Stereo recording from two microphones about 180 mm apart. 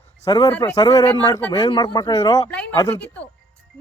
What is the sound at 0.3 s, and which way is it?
Speech, 20° left (ahead or behind).